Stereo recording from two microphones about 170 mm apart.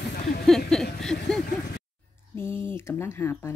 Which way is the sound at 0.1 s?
65° left (ahead or behind).